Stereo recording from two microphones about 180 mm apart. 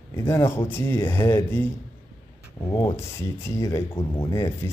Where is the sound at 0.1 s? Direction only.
15° left (ahead or behind).